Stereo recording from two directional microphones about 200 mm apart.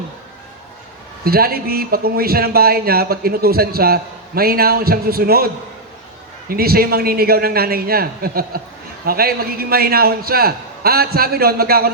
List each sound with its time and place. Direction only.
1.2 s a man's voice: 50° right (ahead or behind)
6.5 s a man's voice: 50° right (ahead or behind)